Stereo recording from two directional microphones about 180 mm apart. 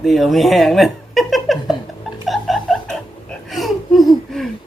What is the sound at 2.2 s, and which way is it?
Music, centre (ahead or behind).